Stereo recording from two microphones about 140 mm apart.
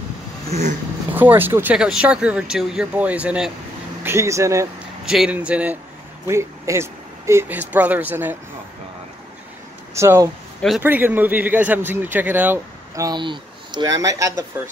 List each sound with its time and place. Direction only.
0.5 s a sound: 55° right (ahead or behind)
1.1 s speech: 15° right (ahead or behind)
4.0 s speech: 20° right (ahead or behind)
5.0 s speech: 5° right (ahead or behind)
6.2 s speech: 20° right (ahead or behind)
9.9 s speech: 20° right (ahead or behind)
13.0 s speech: 35° right (ahead or behind)